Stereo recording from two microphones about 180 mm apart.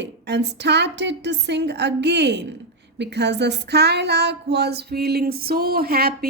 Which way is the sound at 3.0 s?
65° right (ahead or behind).